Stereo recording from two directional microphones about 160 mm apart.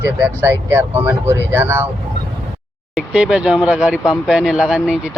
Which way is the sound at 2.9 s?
5° right (ahead or behind).